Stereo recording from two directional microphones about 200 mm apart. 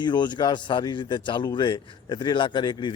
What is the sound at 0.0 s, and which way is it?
Speech, 20° left (ahead or behind).